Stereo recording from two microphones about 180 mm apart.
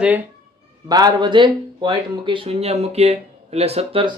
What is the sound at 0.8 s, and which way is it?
Speech, 20° right (ahead or behind).